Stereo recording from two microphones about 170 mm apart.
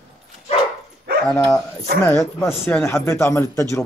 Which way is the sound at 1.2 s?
10° left (ahead or behind).